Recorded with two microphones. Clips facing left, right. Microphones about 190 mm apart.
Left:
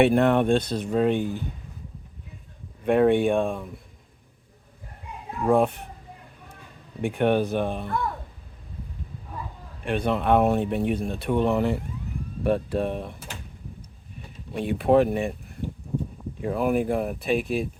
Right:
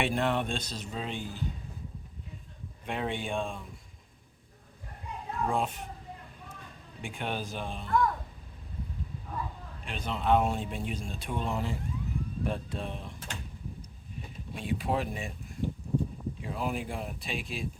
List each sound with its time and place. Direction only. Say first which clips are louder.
0.0 s speech: left 10 dB; 55° left (ahead or behind)
2.8 s speech: left 15 dB; 55° left (ahead or behind)
5.5 s speech: left 12 dB; 60° left (ahead or behind)
7.0 s speech: left 14 dB; 60° left (ahead or behind)
9.8 s speech: left 8 dB; 60° left (ahead or behind)
14.5 s speech: left 11 dB; 60° left (ahead or behind)
16.4 s speech: left 12 dB; 55° left (ahead or behind)